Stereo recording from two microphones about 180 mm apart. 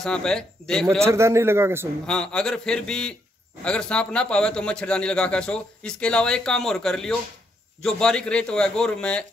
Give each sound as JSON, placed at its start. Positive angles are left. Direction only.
{"t": 0.0, "sound": "a man's voice", "side_deg": 5}
{"t": 1.0, "sound": "speech", "side_deg": -15}
{"t": 2.0, "sound": "a man's voice", "side_deg": 5}